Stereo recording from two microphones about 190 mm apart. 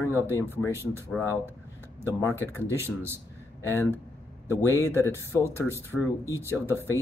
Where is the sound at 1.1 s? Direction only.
Centre (ahead or behind).